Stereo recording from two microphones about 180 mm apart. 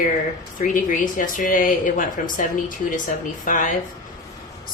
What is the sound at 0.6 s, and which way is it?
Speech, 50° left (ahead or behind).